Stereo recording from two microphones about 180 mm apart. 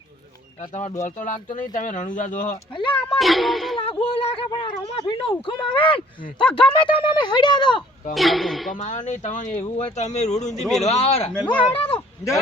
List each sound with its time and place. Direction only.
0.7 s speech: 40° left (ahead or behind)
2.7 s speech: 30° left (ahead or behind)
3.2 s a child's voice: centre (ahead or behind)
4.0 s speech: 30° left (ahead or behind)
6.4 s a child's voice: 5° left (ahead or behind)
6.7 s speech: 25° left (ahead or behind)
8.1 s a child's voice: centre (ahead or behind)
8.7 s speech: 45° left (ahead or behind)
11.9 s a sound: 15° left (ahead or behind)